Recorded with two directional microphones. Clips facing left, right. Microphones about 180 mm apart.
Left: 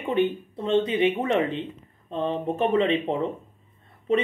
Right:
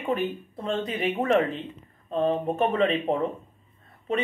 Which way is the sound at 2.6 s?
30° left (ahead or behind).